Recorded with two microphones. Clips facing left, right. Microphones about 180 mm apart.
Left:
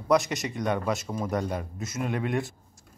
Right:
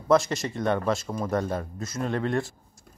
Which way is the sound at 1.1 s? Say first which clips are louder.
Right 1 dB; centre (ahead or behind).